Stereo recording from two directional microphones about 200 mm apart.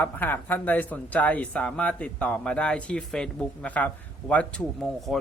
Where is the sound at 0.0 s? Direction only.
10° left (ahead or behind).